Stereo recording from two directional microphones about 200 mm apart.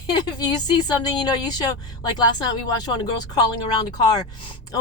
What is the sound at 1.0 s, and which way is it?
Speech, 20° left (ahead or behind).